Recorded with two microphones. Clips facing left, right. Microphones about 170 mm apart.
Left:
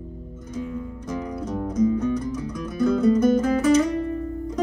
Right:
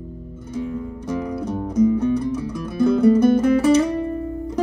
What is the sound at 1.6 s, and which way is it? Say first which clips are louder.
Music: right 4 dB; 30° right (ahead or behind).